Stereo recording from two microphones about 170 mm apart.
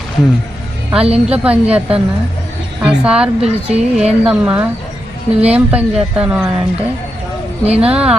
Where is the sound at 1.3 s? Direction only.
5° right (ahead or behind).